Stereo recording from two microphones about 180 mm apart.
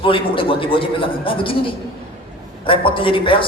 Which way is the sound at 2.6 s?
30° left (ahead or behind).